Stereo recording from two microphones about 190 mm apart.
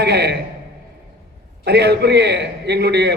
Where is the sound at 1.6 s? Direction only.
60° right (ahead or behind).